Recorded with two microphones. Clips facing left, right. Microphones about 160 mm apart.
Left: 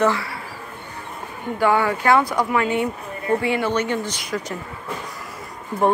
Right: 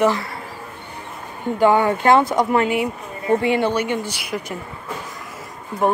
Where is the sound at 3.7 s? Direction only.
10° right (ahead or behind).